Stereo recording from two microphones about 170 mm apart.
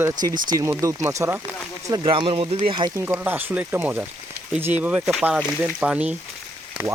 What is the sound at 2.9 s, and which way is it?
Speech, 15° right (ahead or behind).